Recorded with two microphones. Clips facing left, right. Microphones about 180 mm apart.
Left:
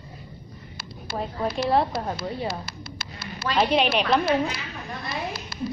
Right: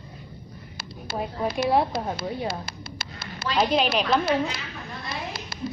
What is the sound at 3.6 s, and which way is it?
Speech, centre (ahead or behind).